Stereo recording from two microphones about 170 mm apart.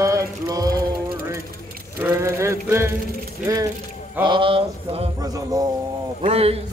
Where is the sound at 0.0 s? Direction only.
20° right (ahead or behind).